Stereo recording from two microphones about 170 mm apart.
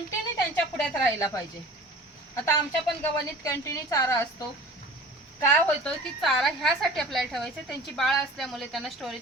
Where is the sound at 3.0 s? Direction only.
15° left (ahead or behind).